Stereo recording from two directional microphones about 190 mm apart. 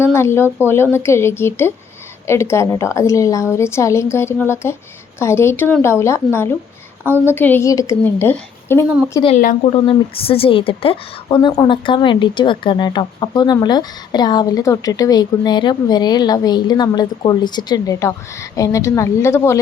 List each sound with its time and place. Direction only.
0.0 s a woman's voice: 15° left (ahead or behind)
9.4 s speech: 45° left (ahead or behind)
9.8 s a woman's voice: 30° left (ahead or behind)